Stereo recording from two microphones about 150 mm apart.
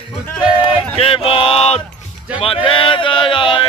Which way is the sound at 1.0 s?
40° left (ahead or behind).